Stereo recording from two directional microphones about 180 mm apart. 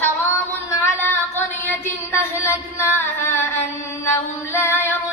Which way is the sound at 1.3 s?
10° left (ahead or behind).